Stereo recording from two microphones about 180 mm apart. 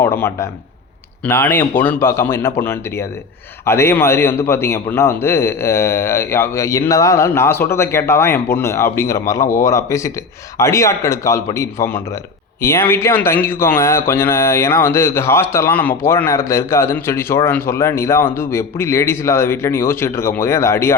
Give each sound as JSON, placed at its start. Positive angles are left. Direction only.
{"t": 0.0, "sound": "speech", "side_deg": 15}